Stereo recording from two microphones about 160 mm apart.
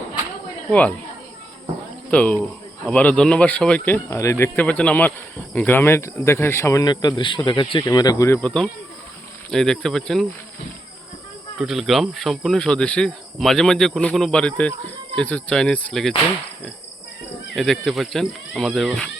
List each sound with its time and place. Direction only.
0.7 s speech: 10° left (ahead or behind)
2.0 s speech: 5° left (ahead or behind)
8.4 s speech: 5° left (ahead or behind)
11.5 s speech: centre (ahead or behind)
17.5 s speech: centre (ahead or behind)